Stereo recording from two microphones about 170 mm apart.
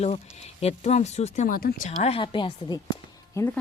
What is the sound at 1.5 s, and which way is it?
Speech, 60° left (ahead or behind).